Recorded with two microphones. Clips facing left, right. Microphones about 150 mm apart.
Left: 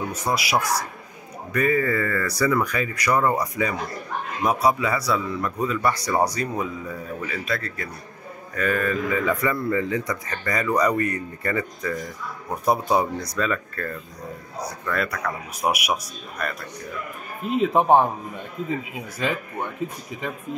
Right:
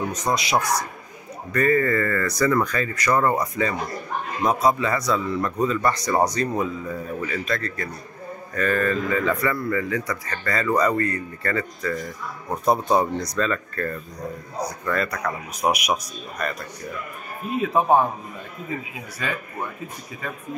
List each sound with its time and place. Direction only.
0.3 s speech: 5° left (ahead or behind)
17.7 s a man's voice: 25° left (ahead or behind)